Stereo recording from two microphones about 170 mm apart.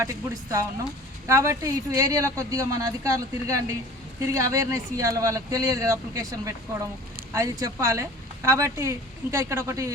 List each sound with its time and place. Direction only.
0.0 s speech: 15° right (ahead or behind)